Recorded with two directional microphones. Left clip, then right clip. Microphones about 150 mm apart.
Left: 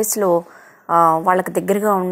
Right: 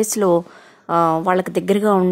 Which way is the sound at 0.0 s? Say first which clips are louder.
Even; 35° right (ahead or behind).